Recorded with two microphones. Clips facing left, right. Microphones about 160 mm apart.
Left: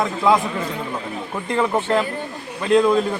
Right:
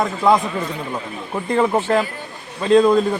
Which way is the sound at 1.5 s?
15° right (ahead or behind).